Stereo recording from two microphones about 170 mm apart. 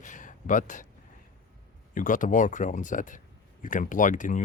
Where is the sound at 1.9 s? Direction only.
50° left (ahead or behind).